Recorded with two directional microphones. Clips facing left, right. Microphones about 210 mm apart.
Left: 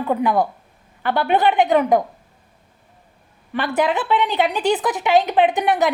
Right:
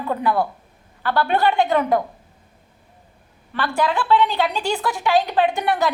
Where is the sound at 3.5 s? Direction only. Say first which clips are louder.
Left 2 dB; 20° left (ahead or behind).